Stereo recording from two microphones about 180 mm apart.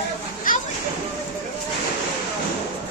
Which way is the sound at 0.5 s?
50° left (ahead or behind).